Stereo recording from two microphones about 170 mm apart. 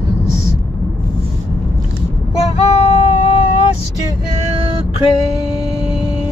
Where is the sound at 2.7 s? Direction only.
35° left (ahead or behind).